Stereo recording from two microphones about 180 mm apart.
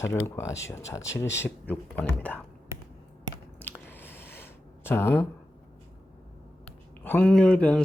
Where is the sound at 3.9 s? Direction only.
10° left (ahead or behind).